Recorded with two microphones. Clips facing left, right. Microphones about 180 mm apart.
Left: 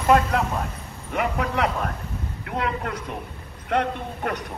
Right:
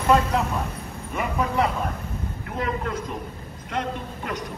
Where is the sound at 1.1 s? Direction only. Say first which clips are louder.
Even; 70° left (ahead or behind).